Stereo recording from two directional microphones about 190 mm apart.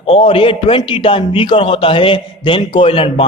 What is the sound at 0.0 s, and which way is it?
A man's voice, 30° left (ahead or behind).